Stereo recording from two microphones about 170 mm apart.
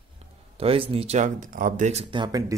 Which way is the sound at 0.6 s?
30° right (ahead or behind).